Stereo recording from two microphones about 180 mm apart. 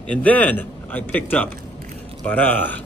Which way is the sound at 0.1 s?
10° left (ahead or behind).